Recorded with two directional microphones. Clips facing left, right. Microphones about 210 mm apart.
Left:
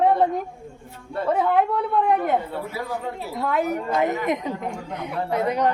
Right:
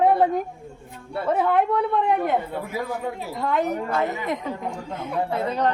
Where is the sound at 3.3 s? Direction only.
5° left (ahead or behind).